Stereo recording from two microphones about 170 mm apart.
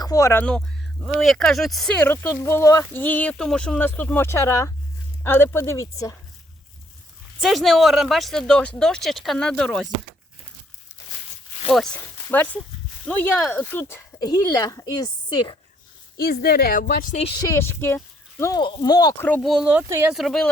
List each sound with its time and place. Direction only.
0.0 s speech: 20° left (ahead or behind)
7.4 s speech: centre (ahead or behind)
13.1 s speech: 10° left (ahead or behind)
16.1 s speech: 65° left (ahead or behind)
17.2 s speech: 20° left (ahead or behind)
19.2 s speech: 5° left (ahead or behind); by 20.1 s 10° right (ahead or behind)
20.1 s speech: centre (ahead or behind)